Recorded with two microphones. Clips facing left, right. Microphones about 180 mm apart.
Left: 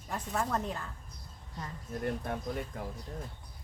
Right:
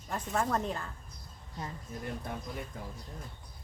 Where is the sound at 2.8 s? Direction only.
65° left (ahead or behind).